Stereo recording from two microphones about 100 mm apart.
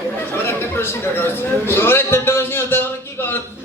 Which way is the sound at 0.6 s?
20° left (ahead or behind).